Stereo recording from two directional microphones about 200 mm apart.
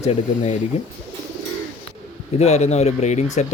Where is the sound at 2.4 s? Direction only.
35° left (ahead or behind).